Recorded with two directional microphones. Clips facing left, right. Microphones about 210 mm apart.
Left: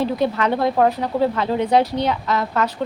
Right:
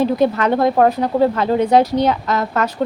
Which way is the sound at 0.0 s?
45° right (ahead or behind).